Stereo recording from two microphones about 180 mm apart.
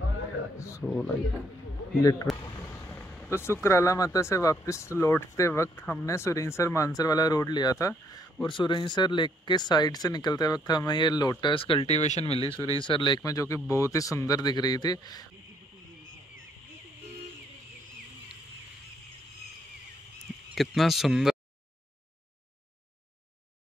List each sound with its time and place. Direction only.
0.6 s speech: 15° left (ahead or behind)
2.3 s a sound: centre (ahead or behind)
2.7 s vehicle: 10° left (ahead or behind)
3.6 s speech: 15° left (ahead or behind)
20.5 s speech: centre (ahead or behind)